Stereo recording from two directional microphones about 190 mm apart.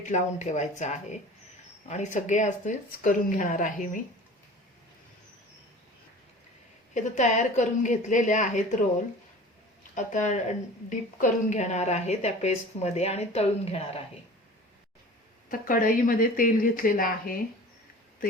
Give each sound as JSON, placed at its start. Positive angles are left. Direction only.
{"t": 0.0, "sound": "a woman's voice", "side_deg": 40}
{"t": 6.9, "sound": "a woman's voice", "side_deg": 40}
{"t": 9.9, "sound": "a woman's voice", "side_deg": 40}
{"t": 15.4, "sound": "speech", "side_deg": 45}